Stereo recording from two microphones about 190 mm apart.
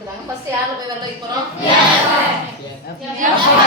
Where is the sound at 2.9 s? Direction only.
55° left (ahead or behind).